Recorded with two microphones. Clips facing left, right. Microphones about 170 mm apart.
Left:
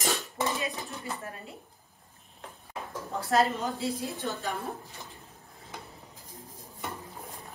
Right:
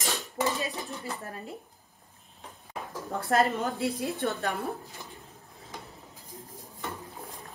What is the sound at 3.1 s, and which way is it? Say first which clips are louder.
A woman's voice: right 1 dB; 55° right (ahead or behind).